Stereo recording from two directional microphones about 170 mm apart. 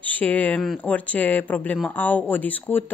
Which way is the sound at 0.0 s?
10° left (ahead or behind).